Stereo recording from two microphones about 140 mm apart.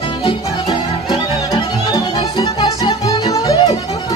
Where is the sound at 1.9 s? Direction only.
25° left (ahead or behind).